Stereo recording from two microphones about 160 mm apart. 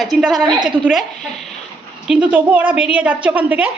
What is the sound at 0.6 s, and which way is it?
Speech, 30° right (ahead or behind).